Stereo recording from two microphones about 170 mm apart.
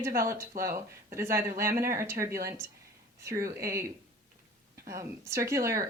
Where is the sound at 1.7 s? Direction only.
55° right (ahead or behind).